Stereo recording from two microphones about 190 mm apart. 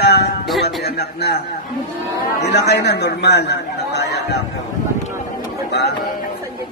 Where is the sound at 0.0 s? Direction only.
60° left (ahead or behind).